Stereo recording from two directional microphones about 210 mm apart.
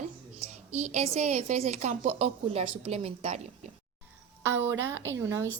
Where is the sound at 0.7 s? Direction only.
35° right (ahead or behind).